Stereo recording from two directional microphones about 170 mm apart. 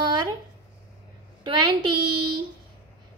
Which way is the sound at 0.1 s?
25° right (ahead or behind).